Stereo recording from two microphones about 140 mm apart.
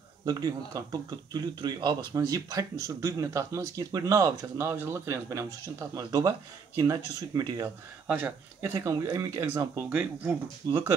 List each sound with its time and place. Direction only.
0.2 s speech: 25° right (ahead or behind)
8.1 s speech: 15° right (ahead or behind)